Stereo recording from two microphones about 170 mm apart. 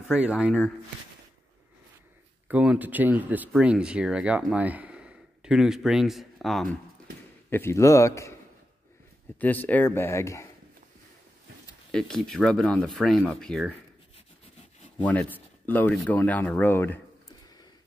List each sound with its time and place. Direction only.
0.1 s speech: 5° right (ahead or behind)
2.4 s speech: 5° right (ahead or behind)
7.4 s speech: 15° left (ahead or behind)
9.4 s speech: 10° left (ahead or behind)
11.9 s speech: centre (ahead or behind)
15.0 s speech: 5° left (ahead or behind)